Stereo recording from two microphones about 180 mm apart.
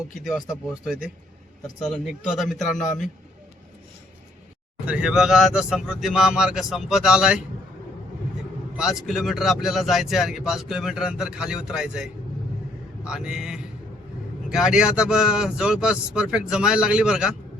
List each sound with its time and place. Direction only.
0.3 s a man's voice: centre (ahead or behind)
4.9 s a man's voice: 5° right (ahead or behind)
8.7 s a man's voice: 5° right (ahead or behind)
13.1 s a man's voice: 5° right (ahead or behind)